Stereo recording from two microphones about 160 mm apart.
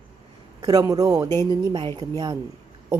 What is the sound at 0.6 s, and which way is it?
A woman's voice, 25° right (ahead or behind).